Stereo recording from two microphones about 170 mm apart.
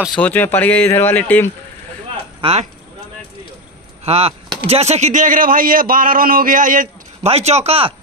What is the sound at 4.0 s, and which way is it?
Speech, 35° right (ahead or behind).